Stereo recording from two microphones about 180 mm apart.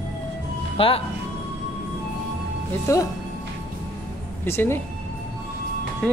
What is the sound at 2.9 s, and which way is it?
Speech, 15° left (ahead or behind).